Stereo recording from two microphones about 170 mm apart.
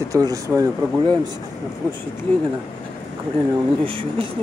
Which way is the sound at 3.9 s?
30° right (ahead or behind).